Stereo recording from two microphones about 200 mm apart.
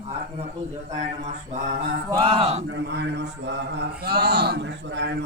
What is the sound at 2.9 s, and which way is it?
A man's voice, 60° right (ahead or behind).